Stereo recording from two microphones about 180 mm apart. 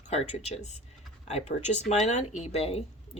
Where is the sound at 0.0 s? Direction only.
40° left (ahead or behind).